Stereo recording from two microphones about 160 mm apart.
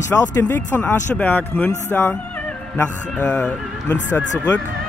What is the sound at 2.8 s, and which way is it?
Speech, 10° left (ahead or behind).